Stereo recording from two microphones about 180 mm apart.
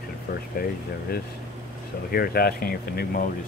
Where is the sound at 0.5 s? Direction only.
55° left (ahead or behind).